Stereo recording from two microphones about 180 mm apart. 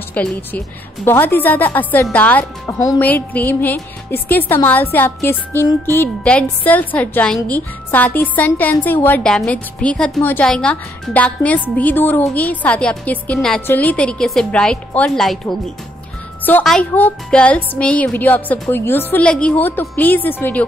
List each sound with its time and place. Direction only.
0.1 s a woman's voice: 5° left (ahead or behind)
16.4 s a woman's voice: 5° left (ahead or behind)